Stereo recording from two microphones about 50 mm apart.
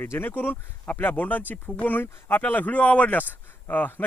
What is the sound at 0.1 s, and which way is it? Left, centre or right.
Speech, left.